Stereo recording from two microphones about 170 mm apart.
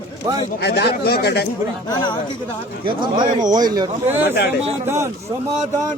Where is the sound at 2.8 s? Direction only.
25° right (ahead or behind).